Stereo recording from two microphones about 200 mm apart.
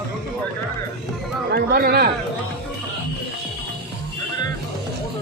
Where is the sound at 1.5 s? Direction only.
50° right (ahead or behind).